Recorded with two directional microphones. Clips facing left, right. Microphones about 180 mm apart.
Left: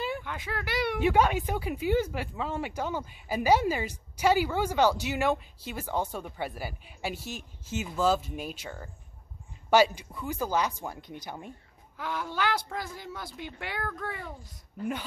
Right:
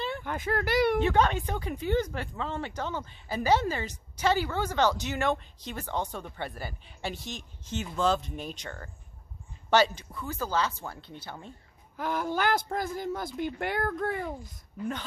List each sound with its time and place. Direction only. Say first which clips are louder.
0.2 s speech: right 6 dB; 45° right (ahead or behind)
1.0 s speech: left 1 dB; 10° left (ahead or behind)
12.0 s speech: right 3 dB; 45° right (ahead or behind)